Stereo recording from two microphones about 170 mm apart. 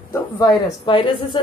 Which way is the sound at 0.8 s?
30° left (ahead or behind).